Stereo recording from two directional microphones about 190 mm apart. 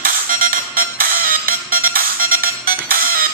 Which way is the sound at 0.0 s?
45° right (ahead or behind).